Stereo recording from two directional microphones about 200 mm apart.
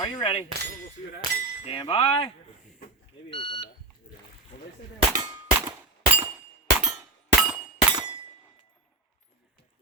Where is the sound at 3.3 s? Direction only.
25° left (ahead or behind).